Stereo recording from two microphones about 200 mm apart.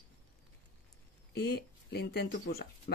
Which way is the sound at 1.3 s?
55° left (ahead or behind).